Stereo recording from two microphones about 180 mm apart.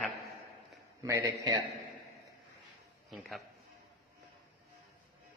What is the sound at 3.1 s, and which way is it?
Speech, centre (ahead or behind).